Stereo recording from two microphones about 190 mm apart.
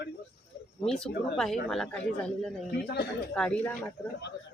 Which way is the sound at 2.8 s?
60° left (ahead or behind).